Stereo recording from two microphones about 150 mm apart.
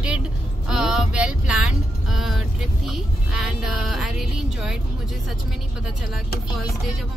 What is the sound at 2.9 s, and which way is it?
Speech, 5° right (ahead or behind).